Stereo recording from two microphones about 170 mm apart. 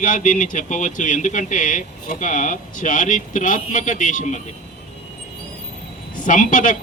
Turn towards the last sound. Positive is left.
turn(degrees=50)  # may be behind; listen again after turning